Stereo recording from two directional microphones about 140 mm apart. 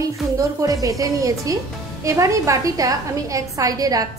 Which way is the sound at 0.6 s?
25° right (ahead or behind).